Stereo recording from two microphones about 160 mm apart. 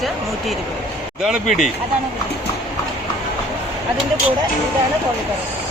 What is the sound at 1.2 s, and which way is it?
Speech, centre (ahead or behind).